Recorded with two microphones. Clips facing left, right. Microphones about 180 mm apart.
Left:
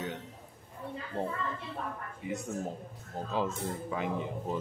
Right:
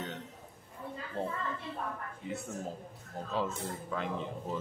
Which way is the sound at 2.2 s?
10° left (ahead or behind).